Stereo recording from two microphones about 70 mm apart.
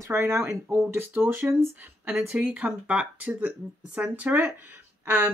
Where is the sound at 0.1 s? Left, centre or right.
Right.